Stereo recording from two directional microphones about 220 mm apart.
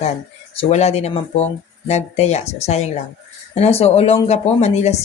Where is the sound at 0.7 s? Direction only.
30° left (ahead or behind).